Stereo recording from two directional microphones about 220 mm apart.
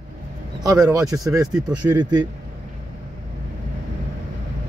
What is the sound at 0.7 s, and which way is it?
Speech, 15° right (ahead or behind).